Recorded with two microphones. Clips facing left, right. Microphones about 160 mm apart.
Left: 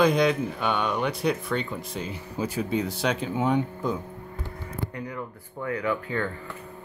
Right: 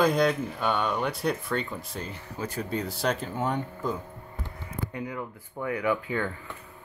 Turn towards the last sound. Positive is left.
turn(degrees=-15)  # may be behind; listen again after turning